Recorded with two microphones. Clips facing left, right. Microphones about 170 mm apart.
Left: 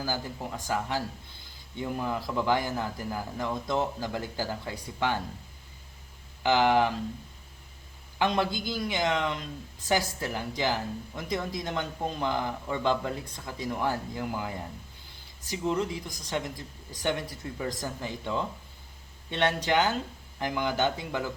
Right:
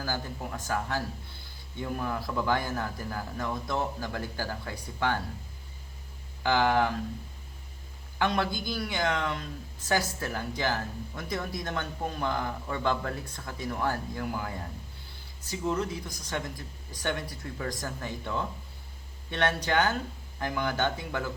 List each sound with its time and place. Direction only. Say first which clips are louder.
0.0 s speech: left 1 dB; 15° left (ahead or behind)
6.4 s speech: left 2 dB; 20° left (ahead or behind)
8.2 s speech: left 1 dB; 20° left (ahead or behind)